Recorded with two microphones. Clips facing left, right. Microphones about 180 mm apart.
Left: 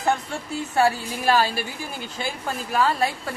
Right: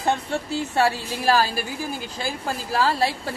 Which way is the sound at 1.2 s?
40° right (ahead or behind).